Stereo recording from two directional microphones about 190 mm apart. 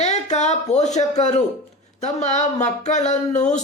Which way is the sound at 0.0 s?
35° left (ahead or behind).